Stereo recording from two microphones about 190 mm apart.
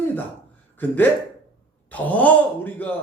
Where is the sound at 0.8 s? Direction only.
10° left (ahead or behind).